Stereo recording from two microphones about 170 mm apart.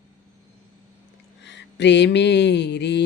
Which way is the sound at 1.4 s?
90° left.